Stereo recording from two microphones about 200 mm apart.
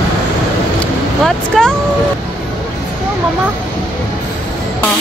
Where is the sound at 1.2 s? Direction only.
5° left (ahead or behind).